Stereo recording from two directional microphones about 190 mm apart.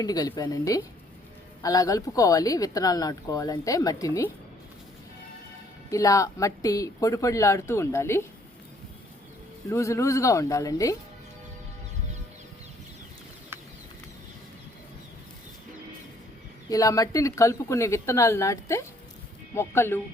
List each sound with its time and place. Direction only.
0.0 s speech: 20° left (ahead or behind)
5.9 s speech: 15° left (ahead or behind)
9.6 s speech: 15° left (ahead or behind)
16.6 s speech: 20° left (ahead or behind)